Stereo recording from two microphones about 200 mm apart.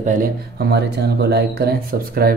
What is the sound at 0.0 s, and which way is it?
Speech, 40° right (ahead or behind).